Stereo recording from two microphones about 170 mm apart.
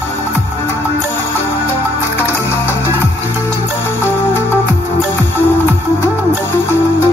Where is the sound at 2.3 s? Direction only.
15° left (ahead or behind).